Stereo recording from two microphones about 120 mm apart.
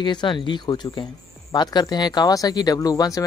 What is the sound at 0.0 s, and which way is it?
Speech, 40° left (ahead or behind).